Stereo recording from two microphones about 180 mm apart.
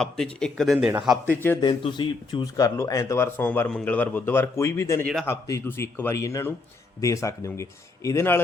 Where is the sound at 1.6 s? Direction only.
25° left (ahead or behind).